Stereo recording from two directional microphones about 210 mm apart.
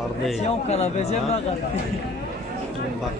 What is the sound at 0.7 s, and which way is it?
Speech, 30° left (ahead or behind).